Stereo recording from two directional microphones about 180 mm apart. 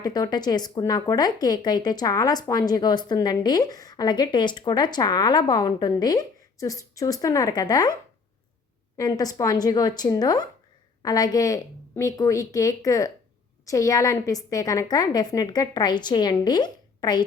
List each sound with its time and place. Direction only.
0.0 s speech: 20° left (ahead or behind)
9.0 s speech: 20° left (ahead or behind)